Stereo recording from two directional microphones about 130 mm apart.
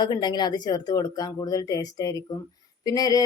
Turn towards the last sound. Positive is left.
turn(degrees=30)  # may be behind; listen again after turning